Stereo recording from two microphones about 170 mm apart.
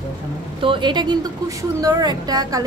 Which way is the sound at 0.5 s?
30° right (ahead or behind).